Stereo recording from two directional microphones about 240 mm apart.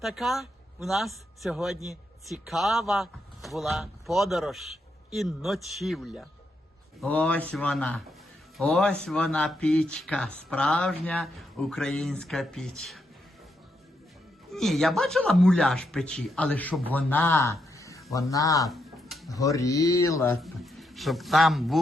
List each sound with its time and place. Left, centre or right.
0.0 s speech: centre
14.5 s a man's voice: centre
18.7 s a sound: centre
19.3 s speech: centre
20.4 s a man's voice: centre